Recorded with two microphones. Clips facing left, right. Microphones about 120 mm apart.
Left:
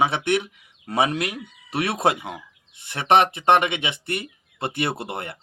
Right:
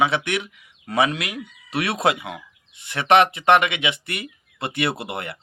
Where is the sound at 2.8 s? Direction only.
45° left (ahead or behind).